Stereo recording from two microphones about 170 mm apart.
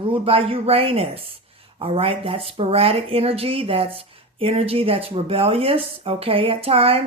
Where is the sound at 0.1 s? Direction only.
30° right (ahead or behind).